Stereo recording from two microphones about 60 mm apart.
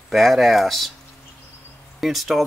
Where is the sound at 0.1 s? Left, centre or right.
Centre.